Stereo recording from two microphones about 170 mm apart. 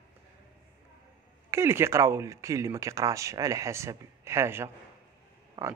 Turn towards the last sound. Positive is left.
turn(degrees=-20)  # may be behind; listen again after turning